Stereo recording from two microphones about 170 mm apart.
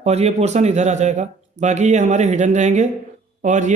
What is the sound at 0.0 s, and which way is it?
Speech, 40° right (ahead or behind).